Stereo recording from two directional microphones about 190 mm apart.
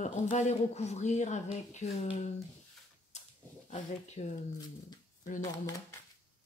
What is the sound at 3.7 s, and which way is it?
Speech, 35° left (ahead or behind).